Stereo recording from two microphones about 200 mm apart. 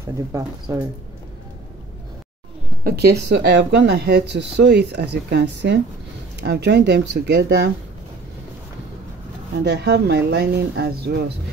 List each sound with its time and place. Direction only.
0.0 s speech: 15° right (ahead or behind)
2.8 s speech: 50° right (ahead or behind)
9.7 s speech: 55° right (ahead or behind)